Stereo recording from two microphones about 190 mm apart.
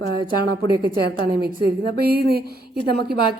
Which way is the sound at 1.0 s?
55° right (ahead or behind).